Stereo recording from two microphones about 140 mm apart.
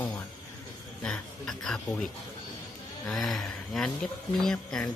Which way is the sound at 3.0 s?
Centre (ahead or behind).